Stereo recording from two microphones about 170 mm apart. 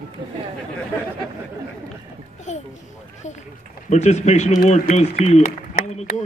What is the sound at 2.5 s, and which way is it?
Speech, 45° left (ahead or behind).